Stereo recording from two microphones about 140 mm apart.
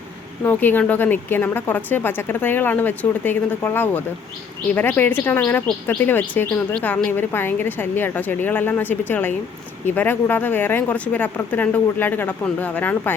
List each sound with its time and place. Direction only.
0.4 s a woman's voice: 15° left (ahead or behind)